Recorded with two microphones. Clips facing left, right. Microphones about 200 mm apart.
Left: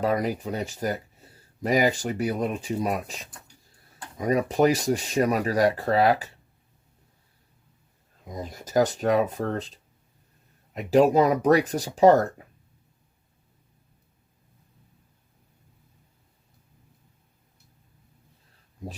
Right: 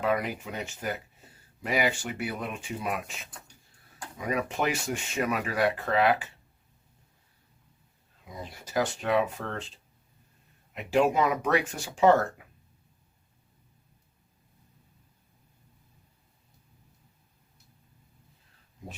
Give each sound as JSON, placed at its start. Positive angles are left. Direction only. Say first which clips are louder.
{"t": 0.0, "sound": "speech", "louder": "left 4 dB", "side_deg": 35}
{"t": 8.2, "sound": "speech", "louder": "left 6 dB", "side_deg": 40}
{"t": 10.8, "sound": "speech", "louder": "left 6 dB", "side_deg": 40}